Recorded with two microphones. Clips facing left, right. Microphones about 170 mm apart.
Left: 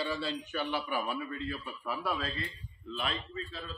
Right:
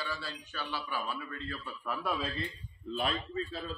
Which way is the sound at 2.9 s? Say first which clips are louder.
Right 3 dB; 40° right (ahead or behind).